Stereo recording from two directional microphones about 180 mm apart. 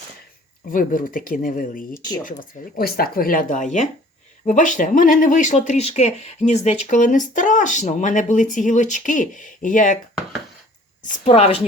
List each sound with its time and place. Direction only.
0.7 s speech: 50° left (ahead or behind)
1.9 s speech: 20° left (ahead or behind)
2.2 s speech: 50° left (ahead or behind)
11.2 s a woman's voice: 35° left (ahead or behind)